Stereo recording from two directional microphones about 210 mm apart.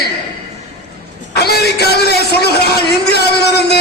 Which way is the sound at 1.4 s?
50° left (ahead or behind).